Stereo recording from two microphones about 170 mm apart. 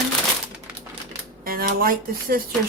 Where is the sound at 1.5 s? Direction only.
60° right (ahead or behind).